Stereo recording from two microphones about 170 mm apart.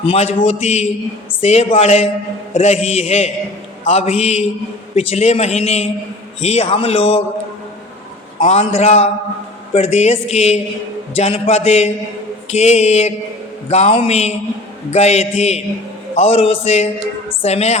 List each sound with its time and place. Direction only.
0.0 s a man's voice: 35° left (ahead or behind)
8.4 s a man's voice: 40° left (ahead or behind)